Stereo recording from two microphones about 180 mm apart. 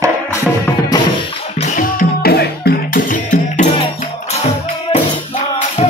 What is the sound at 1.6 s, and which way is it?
Music, 45° left (ahead or behind).